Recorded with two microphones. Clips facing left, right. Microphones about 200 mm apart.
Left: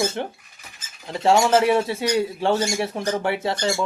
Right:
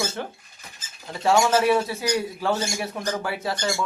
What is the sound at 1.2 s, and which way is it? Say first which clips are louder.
Speech: left 2 dB; 25° left (ahead or behind).